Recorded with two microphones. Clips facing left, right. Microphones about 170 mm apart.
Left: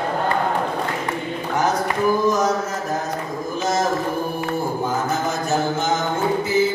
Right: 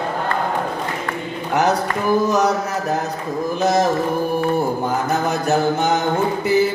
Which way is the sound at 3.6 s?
65° right (ahead or behind).